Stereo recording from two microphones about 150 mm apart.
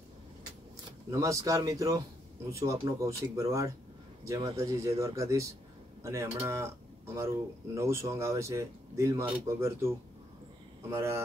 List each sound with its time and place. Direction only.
1.1 s speech: 20° right (ahead or behind)